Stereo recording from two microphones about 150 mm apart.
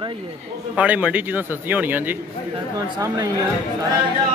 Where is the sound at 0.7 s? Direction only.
10° right (ahead or behind).